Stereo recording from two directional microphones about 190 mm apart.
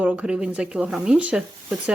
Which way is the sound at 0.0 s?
5° right (ahead or behind).